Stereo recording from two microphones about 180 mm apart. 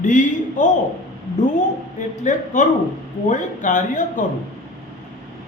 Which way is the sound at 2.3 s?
45° left (ahead or behind).